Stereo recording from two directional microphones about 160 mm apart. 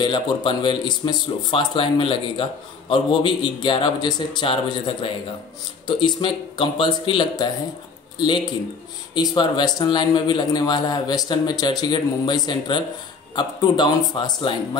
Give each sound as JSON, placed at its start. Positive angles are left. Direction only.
{"t": 0.0, "sound": "a man's voice", "side_deg": 30}
{"t": 9.1, "sound": "a man's voice", "side_deg": 25}